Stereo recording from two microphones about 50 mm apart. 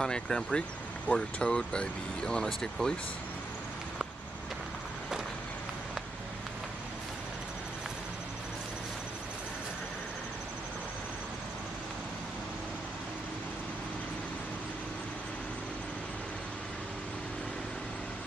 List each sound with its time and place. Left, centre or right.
0.0 s speech: centre